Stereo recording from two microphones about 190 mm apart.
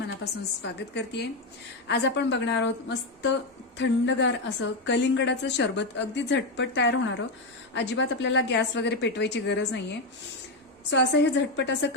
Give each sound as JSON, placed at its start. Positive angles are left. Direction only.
{"t": 0.6, "sound": "a woman's voice", "side_deg": 60}
{"t": 10.8, "sound": "a woman's voice", "side_deg": 65}